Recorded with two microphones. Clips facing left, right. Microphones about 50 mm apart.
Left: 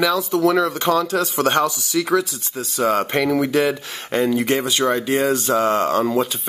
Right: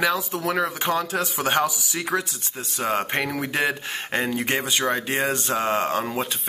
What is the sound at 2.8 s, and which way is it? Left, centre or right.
Speech, centre.